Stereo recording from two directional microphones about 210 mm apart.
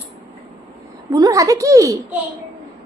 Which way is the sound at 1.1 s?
15° right (ahead or behind).